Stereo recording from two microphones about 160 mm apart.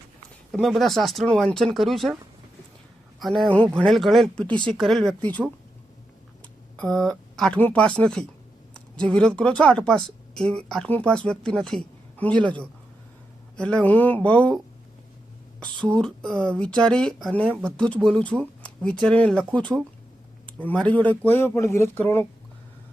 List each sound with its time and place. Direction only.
0.5 s speech: centre (ahead or behind)
3.2 s speech: centre (ahead or behind)
6.7 s a woman's voice: 5° left (ahead or behind)
15.9 s speech: 5° left (ahead or behind)